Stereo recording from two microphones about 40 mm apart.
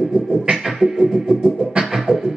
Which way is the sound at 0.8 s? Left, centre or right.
Centre.